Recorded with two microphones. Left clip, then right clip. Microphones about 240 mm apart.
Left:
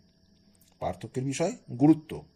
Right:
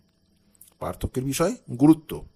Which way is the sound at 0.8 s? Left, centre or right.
Right.